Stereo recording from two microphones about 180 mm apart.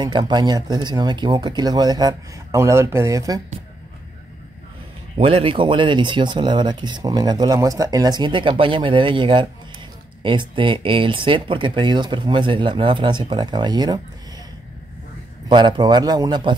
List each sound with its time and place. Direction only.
0.0 s speech: 25° right (ahead or behind)
5.1 s speech: 30° right (ahead or behind)
15.4 s speech: 25° right (ahead or behind)